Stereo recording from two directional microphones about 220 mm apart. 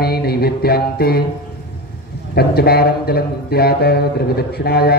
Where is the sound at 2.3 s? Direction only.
45° left (ahead or behind).